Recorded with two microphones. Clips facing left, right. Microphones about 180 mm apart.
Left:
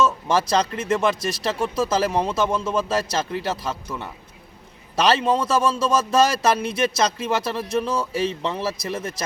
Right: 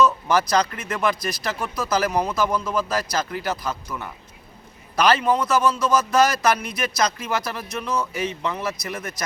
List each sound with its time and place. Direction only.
0.3 s a man's voice: 25° left (ahead or behind)